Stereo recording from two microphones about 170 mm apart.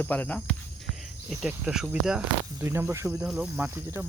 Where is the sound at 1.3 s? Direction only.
5° right (ahead or behind).